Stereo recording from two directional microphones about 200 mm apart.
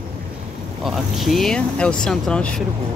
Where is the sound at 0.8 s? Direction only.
Centre (ahead or behind).